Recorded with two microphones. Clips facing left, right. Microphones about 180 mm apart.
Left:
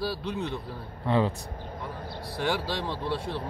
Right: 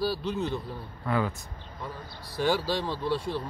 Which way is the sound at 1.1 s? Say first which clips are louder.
Left 3 dB; 30° left (ahead or behind).